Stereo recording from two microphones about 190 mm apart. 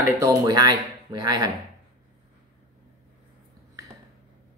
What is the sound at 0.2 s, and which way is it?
Speech, 20° right (ahead or behind).